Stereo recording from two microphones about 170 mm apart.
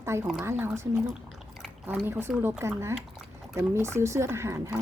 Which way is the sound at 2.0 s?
15° right (ahead or behind).